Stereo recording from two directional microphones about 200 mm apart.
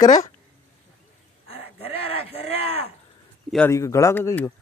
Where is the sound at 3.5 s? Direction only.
10° left (ahead or behind).